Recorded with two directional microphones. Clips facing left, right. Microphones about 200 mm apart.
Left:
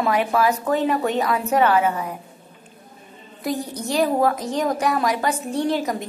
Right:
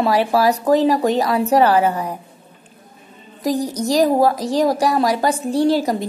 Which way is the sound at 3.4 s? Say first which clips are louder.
Right 6 dB; 40° right (ahead or behind).